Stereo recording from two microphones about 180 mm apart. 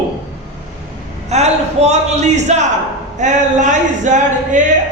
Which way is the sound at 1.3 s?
40° right (ahead or behind).